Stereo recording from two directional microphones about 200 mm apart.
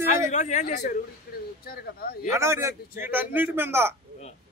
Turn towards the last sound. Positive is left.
turn(degrees=-10)  # may be behind; listen again after turning